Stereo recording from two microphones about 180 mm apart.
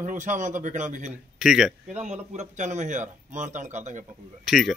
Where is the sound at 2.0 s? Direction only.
40° right (ahead or behind).